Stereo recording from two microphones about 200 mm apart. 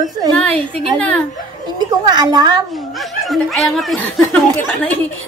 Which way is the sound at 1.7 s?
20° right (ahead or behind).